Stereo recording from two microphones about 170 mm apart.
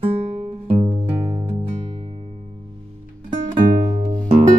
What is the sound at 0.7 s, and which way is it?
Music, 35° right (ahead or behind).